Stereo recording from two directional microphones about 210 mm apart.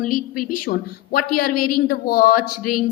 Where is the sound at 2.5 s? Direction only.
90° left.